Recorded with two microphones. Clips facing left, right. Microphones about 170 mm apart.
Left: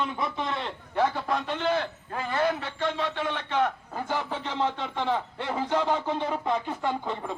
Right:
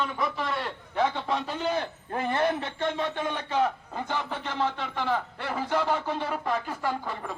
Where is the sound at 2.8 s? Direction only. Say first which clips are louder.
Even; 50° right (ahead or behind).